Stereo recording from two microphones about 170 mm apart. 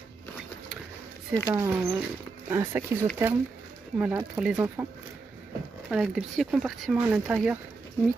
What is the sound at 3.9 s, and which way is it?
Speech, 10° right (ahead or behind).